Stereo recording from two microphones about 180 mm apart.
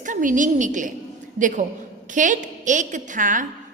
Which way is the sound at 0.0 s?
45° right (ahead or behind).